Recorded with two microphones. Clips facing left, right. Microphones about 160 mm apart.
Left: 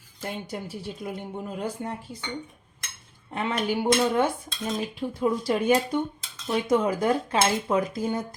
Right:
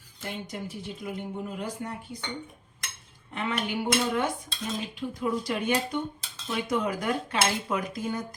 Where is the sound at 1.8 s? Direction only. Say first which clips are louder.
Left 3 dB; 30° left (ahead or behind).